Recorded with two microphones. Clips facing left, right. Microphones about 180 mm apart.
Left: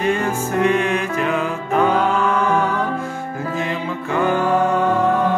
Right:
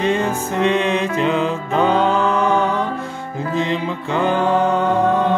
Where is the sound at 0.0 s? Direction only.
25° right (ahead or behind).